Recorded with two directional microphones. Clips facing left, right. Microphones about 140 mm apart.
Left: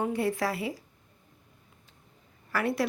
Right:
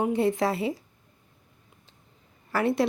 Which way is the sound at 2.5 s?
25° right (ahead or behind).